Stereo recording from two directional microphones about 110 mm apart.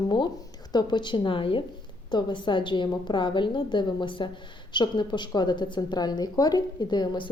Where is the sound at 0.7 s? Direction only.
40° left (ahead or behind).